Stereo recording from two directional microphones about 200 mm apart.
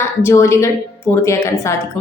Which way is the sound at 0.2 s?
15° left (ahead or behind).